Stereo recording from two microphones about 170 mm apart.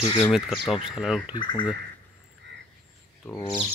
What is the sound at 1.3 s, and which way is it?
Speech, 30° left (ahead or behind).